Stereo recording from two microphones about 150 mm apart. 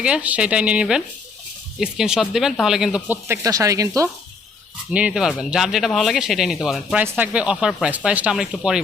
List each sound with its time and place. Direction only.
0.0 s speech: 10° right (ahead or behind)
3.4 s speech: 20° right (ahead or behind)
4.9 s speech: 5° right (ahead or behind)